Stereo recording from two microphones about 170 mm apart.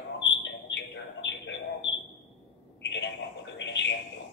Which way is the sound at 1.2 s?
90° left.